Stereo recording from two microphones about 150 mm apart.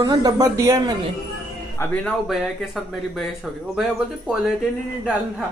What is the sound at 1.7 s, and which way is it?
Speech, 10° left (ahead or behind).